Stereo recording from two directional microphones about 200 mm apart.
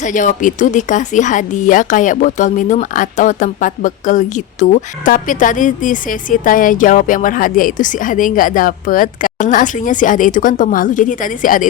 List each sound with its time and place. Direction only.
0.0 s speech: 40° left (ahead or behind)